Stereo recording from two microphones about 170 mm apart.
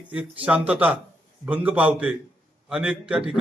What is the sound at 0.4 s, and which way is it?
A man's voice, 10° right (ahead or behind).